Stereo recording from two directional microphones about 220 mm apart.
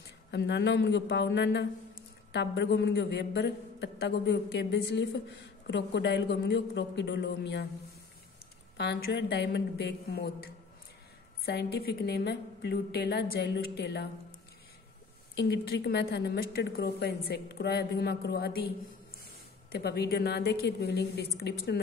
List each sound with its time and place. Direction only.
0.3 s a woman's voice: 50° left (ahead or behind)
8.7 s a woman's voice: 50° left (ahead or behind)
15.3 s a woman's voice: 50° left (ahead or behind)
19.7 s a woman's voice: 45° left (ahead or behind)